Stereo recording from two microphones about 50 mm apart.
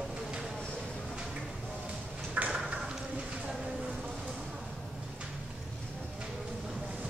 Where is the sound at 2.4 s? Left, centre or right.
Right.